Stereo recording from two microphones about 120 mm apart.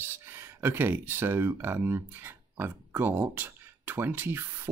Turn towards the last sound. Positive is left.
turn(degrees=-20)  # may be behind; listen again after turning